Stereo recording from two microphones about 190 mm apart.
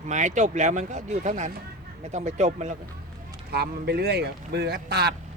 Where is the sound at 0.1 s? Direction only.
40° right (ahead or behind).